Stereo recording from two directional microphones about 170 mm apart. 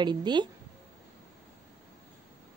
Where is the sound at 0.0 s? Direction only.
25° right (ahead or behind).